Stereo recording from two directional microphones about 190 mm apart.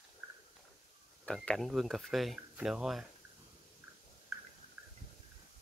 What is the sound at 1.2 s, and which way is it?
Speech, 5° left (ahead or behind).